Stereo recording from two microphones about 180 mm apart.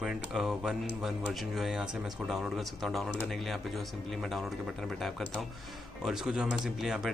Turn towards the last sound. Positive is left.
turn(degrees=0)  # may be behind; listen again after turning